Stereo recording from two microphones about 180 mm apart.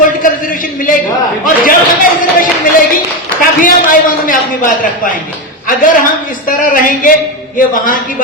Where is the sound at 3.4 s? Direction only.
50° left (ahead or behind).